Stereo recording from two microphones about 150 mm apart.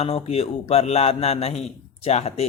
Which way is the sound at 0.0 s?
45° left (ahead or behind).